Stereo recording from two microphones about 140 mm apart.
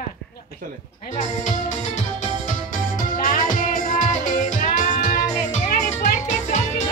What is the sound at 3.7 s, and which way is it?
Music, 65° left (ahead or behind).